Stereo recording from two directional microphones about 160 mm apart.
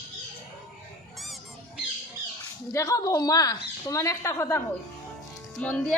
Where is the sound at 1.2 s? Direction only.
Centre (ahead or behind).